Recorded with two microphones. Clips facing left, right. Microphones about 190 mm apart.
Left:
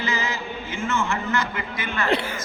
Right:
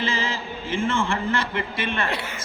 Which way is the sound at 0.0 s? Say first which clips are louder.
Right 1 dB; 30° right (ahead or behind).